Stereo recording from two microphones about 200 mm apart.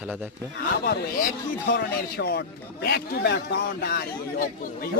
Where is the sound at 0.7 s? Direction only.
50° left (ahead or behind).